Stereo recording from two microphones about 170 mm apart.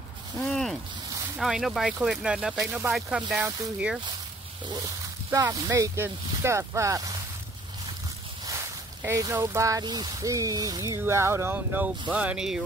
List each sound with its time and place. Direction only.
0.4 s a sound: 5° left (ahead or behind)
1.4 s speech: centre (ahead or behind)
5.3 s speech: 20° right (ahead or behind)
8.5 s speech: 15° right (ahead or behind)